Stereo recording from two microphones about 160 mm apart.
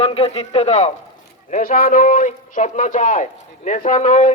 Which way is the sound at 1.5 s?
60° left (ahead or behind).